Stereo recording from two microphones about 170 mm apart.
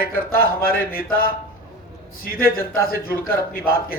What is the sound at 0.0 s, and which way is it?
Speech, 60° left (ahead or behind).